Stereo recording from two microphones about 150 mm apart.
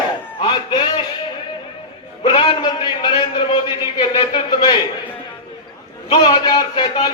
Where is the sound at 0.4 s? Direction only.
30° left (ahead or behind).